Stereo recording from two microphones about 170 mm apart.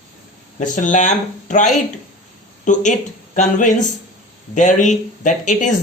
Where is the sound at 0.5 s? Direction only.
45° left (ahead or behind).